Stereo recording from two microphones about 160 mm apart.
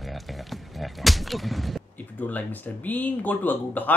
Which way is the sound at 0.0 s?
Centre (ahead or behind).